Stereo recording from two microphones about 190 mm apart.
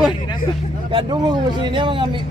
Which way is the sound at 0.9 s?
25° right (ahead or behind).